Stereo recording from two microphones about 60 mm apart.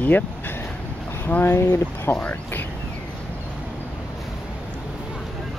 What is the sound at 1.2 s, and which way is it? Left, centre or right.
Speech, left.